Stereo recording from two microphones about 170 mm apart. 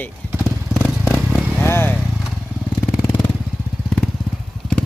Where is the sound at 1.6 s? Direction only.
15° left (ahead or behind).